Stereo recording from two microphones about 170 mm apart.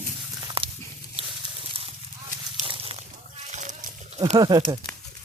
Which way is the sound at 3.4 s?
45° right (ahead or behind).